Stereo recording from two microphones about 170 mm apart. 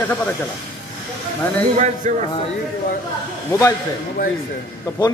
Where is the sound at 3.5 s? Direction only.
15° left (ahead or behind).